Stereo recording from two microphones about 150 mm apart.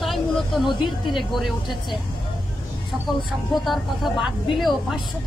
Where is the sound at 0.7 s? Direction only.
30° left (ahead or behind).